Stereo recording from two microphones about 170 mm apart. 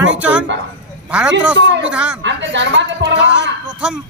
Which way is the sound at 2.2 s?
90° right.